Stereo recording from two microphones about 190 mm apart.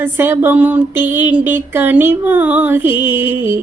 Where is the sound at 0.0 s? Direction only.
10° right (ahead or behind).